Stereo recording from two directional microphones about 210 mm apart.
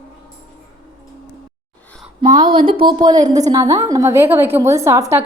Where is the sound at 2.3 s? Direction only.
20° right (ahead or behind).